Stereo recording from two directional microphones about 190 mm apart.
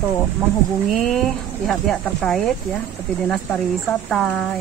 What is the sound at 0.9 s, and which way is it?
Speech, centre (ahead or behind).